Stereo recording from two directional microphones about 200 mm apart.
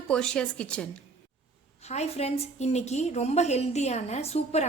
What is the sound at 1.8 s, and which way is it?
A woman's voice, 35° left (ahead or behind).